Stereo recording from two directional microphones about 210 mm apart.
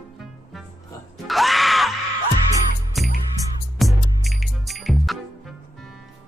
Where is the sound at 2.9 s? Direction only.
Centre (ahead or behind).